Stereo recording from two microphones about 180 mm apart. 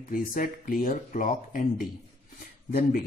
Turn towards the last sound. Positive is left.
turn(degrees=55)  # may be behind; listen again after turning